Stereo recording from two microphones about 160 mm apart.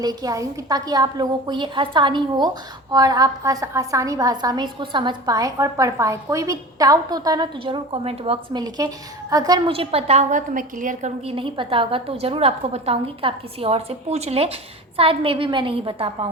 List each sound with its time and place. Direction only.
0.0 s a woman's voice: 25° right (ahead or behind)
9.3 s a woman's voice: 25° right (ahead or behind); by 11.1 s 55° right (ahead or behind)
11.3 s a woman's voice: 35° right (ahead or behind)